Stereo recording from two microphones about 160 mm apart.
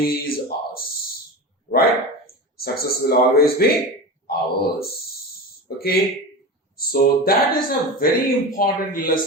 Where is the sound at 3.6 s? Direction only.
70° left (ahead or behind).